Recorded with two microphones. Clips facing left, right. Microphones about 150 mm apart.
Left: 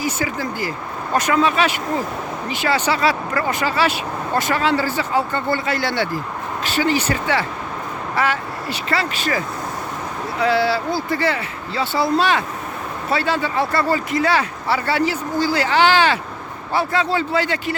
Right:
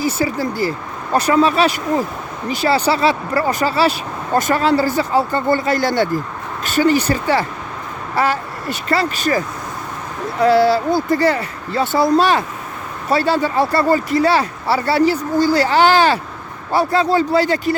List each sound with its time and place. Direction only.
0.0 s speech: 35° right (ahead or behind)
10.4 s speech: 45° right (ahead or behind)